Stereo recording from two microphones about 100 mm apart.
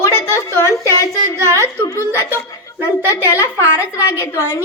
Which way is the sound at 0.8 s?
30° right (ahead or behind).